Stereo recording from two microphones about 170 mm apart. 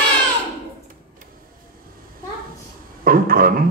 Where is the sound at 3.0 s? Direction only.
60° right (ahead or behind).